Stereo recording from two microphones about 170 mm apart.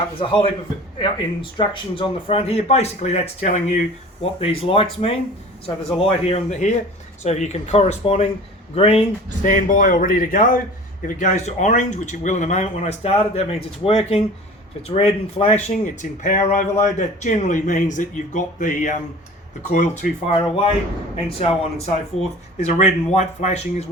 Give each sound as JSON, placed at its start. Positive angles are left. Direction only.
{"t": 0.2, "sound": "speech", "side_deg": 30}
{"t": 9.5, "sound": "speech", "side_deg": 50}
{"t": 20.0, "sound": "speech", "side_deg": 40}